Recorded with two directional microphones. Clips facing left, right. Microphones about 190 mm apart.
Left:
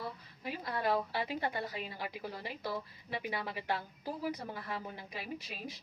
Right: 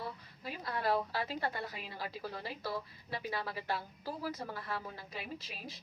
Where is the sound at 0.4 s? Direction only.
20° left (ahead or behind).